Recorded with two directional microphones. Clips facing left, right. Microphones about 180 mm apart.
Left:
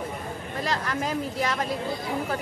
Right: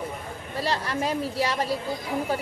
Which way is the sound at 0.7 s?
30° right (ahead or behind).